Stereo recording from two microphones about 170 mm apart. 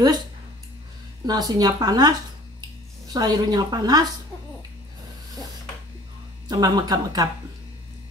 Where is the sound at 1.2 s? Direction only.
25° right (ahead or behind).